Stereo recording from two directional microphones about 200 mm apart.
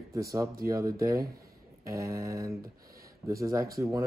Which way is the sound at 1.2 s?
50° right (ahead or behind).